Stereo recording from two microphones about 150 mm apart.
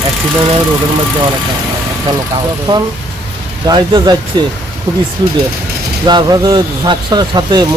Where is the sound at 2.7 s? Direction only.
35° right (ahead or behind).